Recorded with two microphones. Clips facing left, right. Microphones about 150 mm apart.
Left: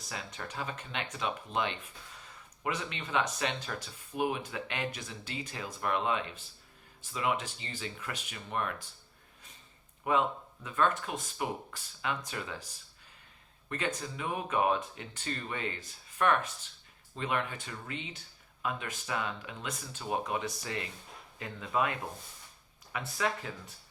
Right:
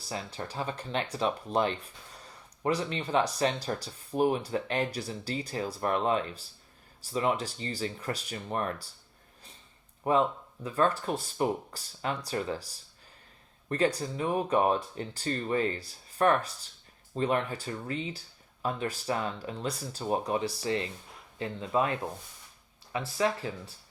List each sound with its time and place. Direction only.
0.0 s speech: 35° right (ahead or behind)
10.0 s speech: 35° right (ahead or behind)